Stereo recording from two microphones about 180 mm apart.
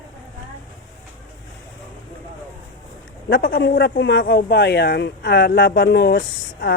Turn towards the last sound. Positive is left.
turn(degrees=65)  # may be behind; listen again after turning